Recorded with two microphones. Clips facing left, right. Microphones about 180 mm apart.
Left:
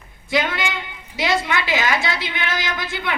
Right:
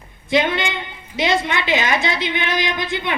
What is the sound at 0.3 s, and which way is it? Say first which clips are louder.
A woman's voice: right 3 dB; 20° right (ahead or behind).